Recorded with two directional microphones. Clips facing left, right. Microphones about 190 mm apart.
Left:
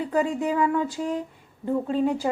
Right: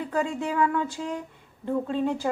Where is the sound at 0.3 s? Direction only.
15° left (ahead or behind).